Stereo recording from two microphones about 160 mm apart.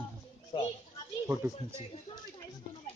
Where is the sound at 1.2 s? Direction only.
15° right (ahead or behind).